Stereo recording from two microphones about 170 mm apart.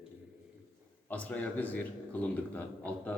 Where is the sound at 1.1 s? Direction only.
10° left (ahead or behind).